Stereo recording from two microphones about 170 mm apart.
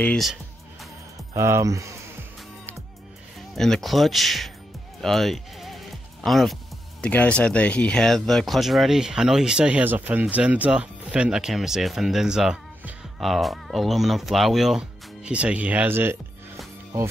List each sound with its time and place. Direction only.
0.0 s music: 5° left (ahead or behind)
1.3 s speech: 15° right (ahead or behind)
3.5 s speech: centre (ahead or behind)